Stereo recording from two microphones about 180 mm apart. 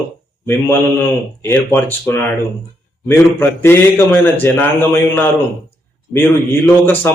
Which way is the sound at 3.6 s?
10° left (ahead or behind).